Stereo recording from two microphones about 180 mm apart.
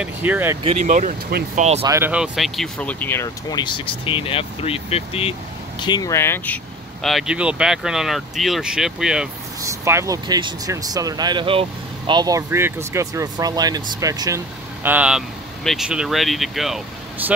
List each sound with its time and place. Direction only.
0.0 s speech: 10° right (ahead or behind)
0.8 s speech: 45° right (ahead or behind)
1.8 s speech: 15° right (ahead or behind)
9.6 s speech: 15° right (ahead or behind)
14.8 s speech: 10° right (ahead or behind)